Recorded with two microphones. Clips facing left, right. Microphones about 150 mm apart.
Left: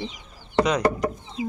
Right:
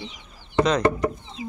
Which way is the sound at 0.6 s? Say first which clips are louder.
Right 1 dB; 10° left (ahead or behind).